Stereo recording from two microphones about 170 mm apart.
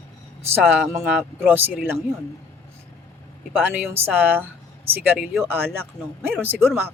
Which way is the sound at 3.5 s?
10° right (ahead or behind).